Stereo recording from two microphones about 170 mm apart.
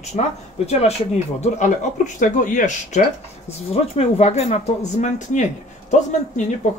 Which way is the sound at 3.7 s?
40° left (ahead or behind).